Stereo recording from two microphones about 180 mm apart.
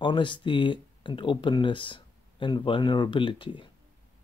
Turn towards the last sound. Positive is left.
turn(degrees=25)  # may be behind; listen again after turning